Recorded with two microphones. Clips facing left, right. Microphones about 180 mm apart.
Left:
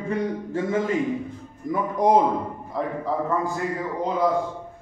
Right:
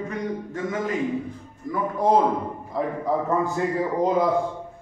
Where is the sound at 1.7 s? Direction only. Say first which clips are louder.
Left 1 dB; 15° left (ahead or behind).